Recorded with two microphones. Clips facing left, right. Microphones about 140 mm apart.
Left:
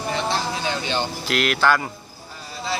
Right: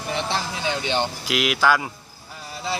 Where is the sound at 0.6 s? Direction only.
20° right (ahead or behind).